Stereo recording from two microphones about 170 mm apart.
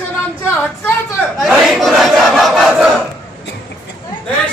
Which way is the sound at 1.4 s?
Centre (ahead or behind).